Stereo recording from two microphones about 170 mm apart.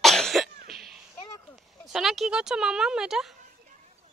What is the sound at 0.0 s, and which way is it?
Cough, centre (ahead or behind).